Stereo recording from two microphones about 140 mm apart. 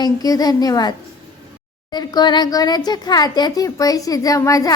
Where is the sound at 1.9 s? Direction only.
30° left (ahead or behind).